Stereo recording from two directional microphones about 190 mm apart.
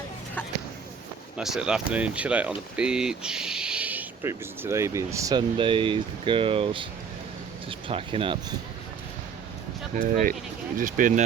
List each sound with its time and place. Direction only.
1.4 s speech: 5° right (ahead or behind); by 8.5 s 25° right (ahead or behind)
9.9 s speech: 45° right (ahead or behind)